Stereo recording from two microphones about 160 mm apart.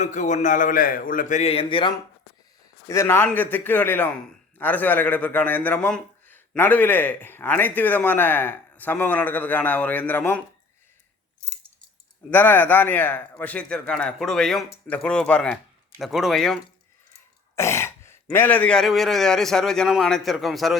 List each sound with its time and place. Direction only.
0.0 s a man's voice: 50° left (ahead or behind); by 1.9 s 35° left (ahead or behind)
2.8 s a man's voice: 15° left (ahead or behind)
12.3 s a man's voice: 10° left (ahead or behind)
17.5 s speech: 15° left (ahead or behind); by 20.7 s centre (ahead or behind)